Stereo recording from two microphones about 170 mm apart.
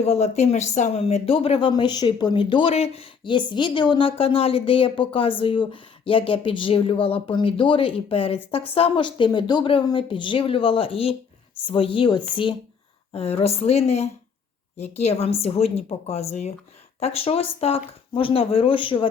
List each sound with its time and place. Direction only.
0.0 s speech: 40° left (ahead or behind)